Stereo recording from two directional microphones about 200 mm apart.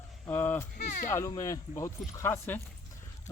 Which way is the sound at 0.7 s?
45° left (ahead or behind).